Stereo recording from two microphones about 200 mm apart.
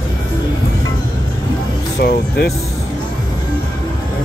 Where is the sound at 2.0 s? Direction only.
50° left (ahead or behind).